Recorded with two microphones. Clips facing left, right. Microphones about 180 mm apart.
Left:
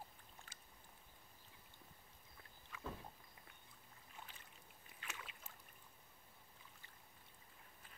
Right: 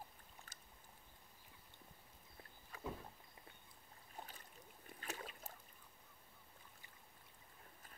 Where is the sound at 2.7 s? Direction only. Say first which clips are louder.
Right 2 dB; 35° right (ahead or behind).